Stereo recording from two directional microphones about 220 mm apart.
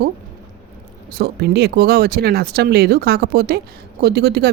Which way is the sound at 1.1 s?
45° right (ahead or behind).